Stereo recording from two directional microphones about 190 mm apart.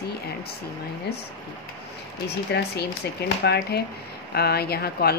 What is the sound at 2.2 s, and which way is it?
Speech, 60° left (ahead or behind).